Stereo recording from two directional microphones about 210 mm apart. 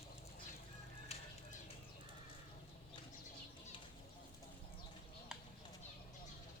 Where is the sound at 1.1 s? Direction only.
30° left (ahead or behind).